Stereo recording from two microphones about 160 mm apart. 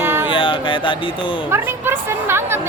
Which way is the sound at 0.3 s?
30° left (ahead or behind).